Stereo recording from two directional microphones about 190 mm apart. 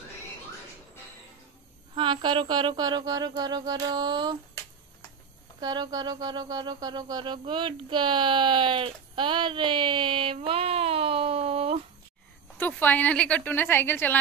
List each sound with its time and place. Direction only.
2.0 s a sound: 25° right (ahead or behind)
5.6 s speech: 20° right (ahead or behind)
12.5 s a woman's voice: 10° left (ahead or behind)